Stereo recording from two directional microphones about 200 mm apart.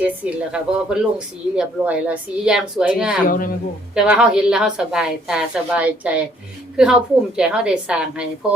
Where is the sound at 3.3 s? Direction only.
45° left (ahead or behind).